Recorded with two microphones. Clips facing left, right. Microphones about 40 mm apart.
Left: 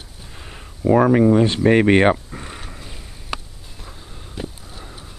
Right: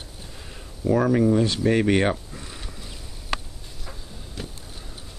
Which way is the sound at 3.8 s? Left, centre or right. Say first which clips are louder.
Even; centre.